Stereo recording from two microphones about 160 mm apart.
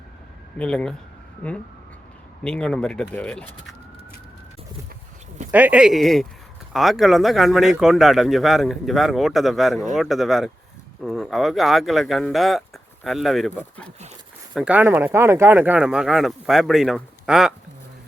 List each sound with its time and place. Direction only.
0.6 s speech: 5° left (ahead or behind)
2.4 s speech: 5° left (ahead or behind)
5.5 s speech: 10° right (ahead or behind); by 13.9 s 5° left (ahead or behind)
14.5 s speech: 10° right (ahead or behind)